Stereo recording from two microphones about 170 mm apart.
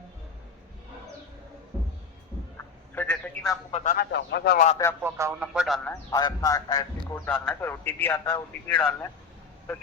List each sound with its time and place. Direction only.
2.9 s telephone: 10° left (ahead or behind)
3.7 s speech: 40° left (ahead or behind)
3.9 s a man's voice: 85° left
5.0 s speech: 15° right (ahead or behind)
5.6 s a man's voice: 5° left (ahead or behind)
6.1 s a man's voice: 20° left (ahead or behind)
7.3 s a man's voice: 10° left (ahead or behind)